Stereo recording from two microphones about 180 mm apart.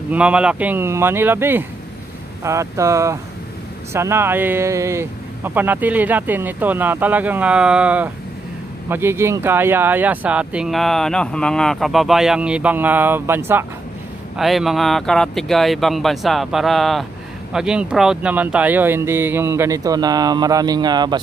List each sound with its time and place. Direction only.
0.1 s speech: 5° right (ahead or behind)
14.3 s speech: centre (ahead or behind); by 21.2 s 25° right (ahead or behind)